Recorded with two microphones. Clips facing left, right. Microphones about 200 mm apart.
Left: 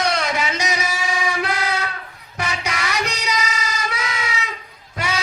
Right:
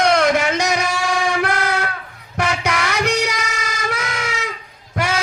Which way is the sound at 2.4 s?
55° right (ahead or behind).